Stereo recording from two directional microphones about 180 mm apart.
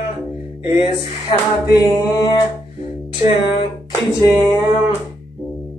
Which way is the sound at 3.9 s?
20° left (ahead or behind).